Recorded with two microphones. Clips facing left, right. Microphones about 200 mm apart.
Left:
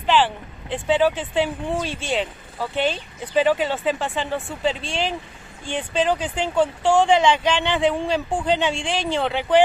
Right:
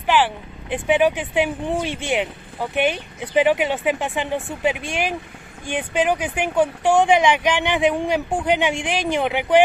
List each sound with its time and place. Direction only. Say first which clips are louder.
0.0 s speech: even; 10° right (ahead or behind)